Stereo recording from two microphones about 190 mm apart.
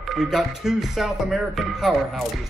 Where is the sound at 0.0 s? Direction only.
Centre (ahead or behind).